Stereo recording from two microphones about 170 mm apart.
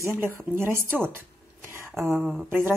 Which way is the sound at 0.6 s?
15° right (ahead or behind).